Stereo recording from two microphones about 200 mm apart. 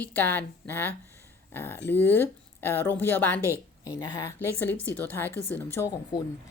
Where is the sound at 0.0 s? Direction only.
10° left (ahead or behind).